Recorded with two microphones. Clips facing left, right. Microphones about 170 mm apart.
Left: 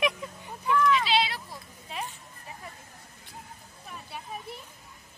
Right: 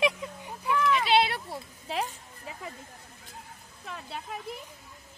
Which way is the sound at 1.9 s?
85° right.